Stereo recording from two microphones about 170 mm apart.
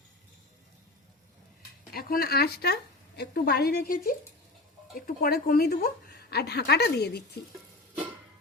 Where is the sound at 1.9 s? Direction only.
65° left (ahead or behind).